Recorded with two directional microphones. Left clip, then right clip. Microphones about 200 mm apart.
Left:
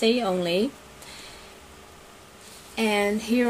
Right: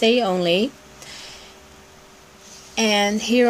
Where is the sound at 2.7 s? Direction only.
35° right (ahead or behind).